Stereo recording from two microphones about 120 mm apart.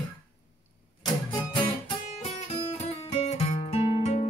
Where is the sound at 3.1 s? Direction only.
65° left (ahead or behind).